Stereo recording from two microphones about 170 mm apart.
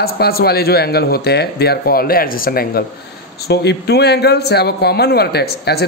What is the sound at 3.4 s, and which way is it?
A man's voice, 75° left (ahead or behind).